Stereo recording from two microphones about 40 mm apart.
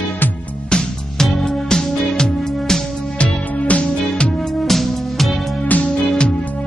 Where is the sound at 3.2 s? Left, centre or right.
Left.